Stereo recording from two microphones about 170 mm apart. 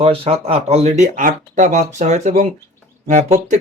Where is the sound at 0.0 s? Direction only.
35° right (ahead or behind).